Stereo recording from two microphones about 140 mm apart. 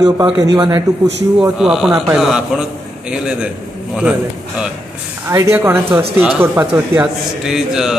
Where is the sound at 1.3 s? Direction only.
5° right (ahead or behind).